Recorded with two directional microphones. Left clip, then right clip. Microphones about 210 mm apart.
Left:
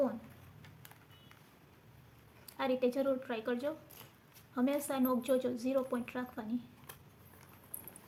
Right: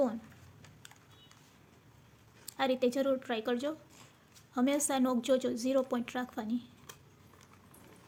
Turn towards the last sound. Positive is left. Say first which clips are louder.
# right 4 dB
turn(degrees=-40)  # may be behind; listen again after turning